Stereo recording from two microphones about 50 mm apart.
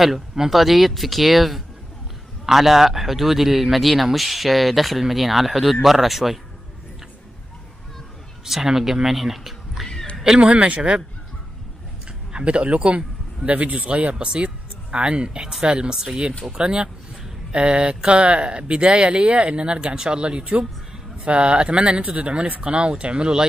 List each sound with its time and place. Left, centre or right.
0.0 s speech: centre
8.5 s speech: centre
10.4 s speech: right
12.3 s speech: right